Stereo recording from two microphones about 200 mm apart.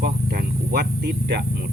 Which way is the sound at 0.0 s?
50° right (ahead or behind).